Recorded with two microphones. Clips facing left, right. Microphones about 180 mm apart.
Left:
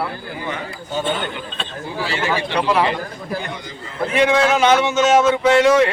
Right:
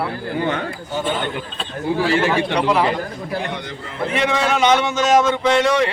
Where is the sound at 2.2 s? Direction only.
Centre (ahead or behind).